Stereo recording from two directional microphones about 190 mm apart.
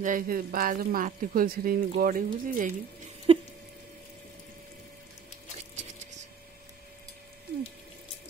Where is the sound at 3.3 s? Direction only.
30° right (ahead or behind).